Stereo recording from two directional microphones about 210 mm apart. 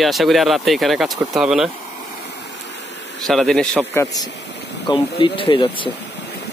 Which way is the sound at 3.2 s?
Centre (ahead or behind).